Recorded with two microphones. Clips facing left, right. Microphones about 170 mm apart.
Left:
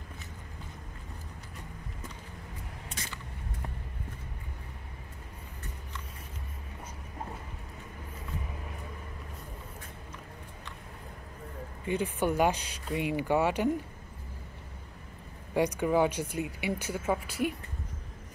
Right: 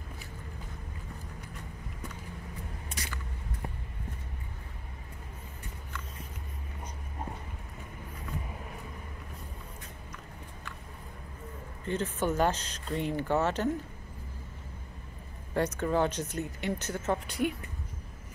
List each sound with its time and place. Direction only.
11.8 s speech: 10° left (ahead or behind)
15.5 s speech: 15° left (ahead or behind)